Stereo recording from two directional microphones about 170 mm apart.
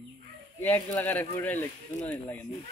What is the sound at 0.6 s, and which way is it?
Speech, 10° left (ahead or behind).